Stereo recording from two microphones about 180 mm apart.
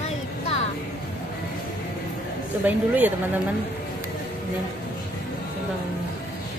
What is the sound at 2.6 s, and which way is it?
Speech, 10° right (ahead or behind).